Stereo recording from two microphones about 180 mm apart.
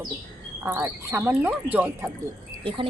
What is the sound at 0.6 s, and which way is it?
Speech, 15° right (ahead or behind).